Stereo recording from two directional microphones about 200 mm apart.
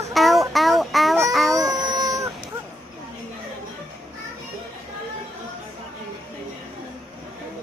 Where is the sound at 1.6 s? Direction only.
20° right (ahead or behind).